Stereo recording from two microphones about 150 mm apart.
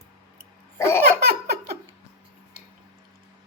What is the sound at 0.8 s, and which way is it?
Laughter, 15° left (ahead or behind).